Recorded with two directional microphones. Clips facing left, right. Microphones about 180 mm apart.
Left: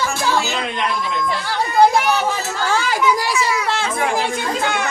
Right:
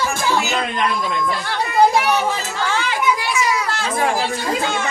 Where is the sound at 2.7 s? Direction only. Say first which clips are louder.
Left 2 dB; 40° left (ahead or behind).